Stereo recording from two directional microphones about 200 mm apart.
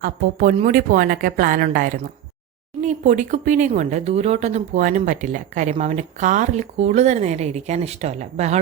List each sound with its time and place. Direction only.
0.0 s a woman's voice: 40° right (ahead or behind)